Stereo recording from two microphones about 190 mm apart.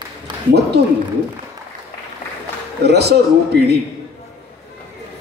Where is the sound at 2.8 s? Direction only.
60° right (ahead or behind).